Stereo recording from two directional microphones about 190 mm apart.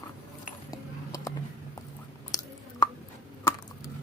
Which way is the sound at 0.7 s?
15° left (ahead or behind).